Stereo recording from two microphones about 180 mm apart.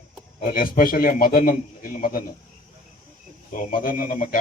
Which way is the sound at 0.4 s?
50° left (ahead or behind).